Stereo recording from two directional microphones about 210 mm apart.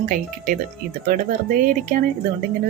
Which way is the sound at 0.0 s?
40° right (ahead or behind).